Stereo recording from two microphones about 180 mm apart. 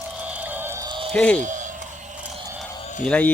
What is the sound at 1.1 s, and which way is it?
Speech, 5° left (ahead or behind).